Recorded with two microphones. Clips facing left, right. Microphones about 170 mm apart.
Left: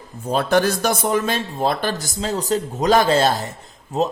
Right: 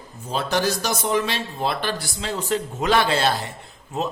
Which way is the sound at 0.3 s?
55° left (ahead or behind).